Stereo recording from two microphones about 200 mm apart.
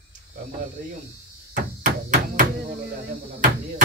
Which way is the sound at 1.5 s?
40° right (ahead or behind).